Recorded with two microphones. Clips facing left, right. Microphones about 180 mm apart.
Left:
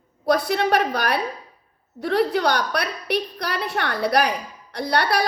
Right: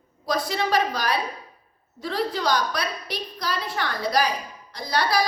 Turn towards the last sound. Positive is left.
turn(degrees=65)  # may be behind; listen again after turning